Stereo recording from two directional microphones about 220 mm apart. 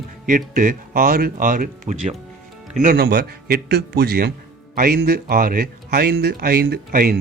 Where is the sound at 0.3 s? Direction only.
40° right (ahead or behind).